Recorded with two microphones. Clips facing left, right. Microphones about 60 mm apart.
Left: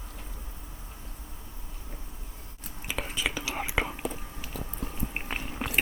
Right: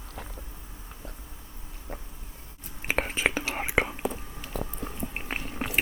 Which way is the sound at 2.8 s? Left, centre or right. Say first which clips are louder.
Right 5 dB; right.